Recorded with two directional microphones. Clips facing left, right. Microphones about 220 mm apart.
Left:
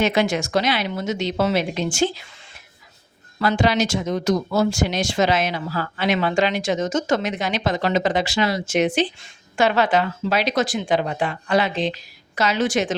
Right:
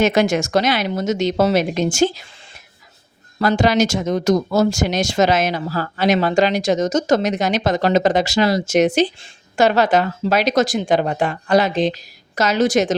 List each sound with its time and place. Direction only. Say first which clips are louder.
0.0 s a woman's voice: right 4 dB; 45° right (ahead or behind)
3.3 s speech: right 3 dB; 40° right (ahead or behind)